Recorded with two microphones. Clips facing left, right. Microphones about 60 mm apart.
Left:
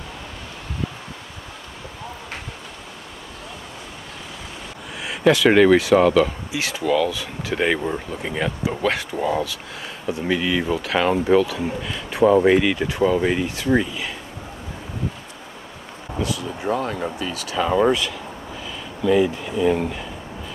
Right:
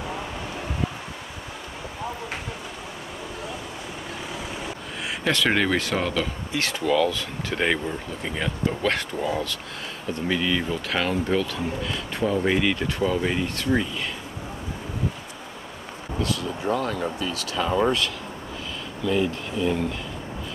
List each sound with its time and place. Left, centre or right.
5.0 s speech: centre
16.2 s speech: centre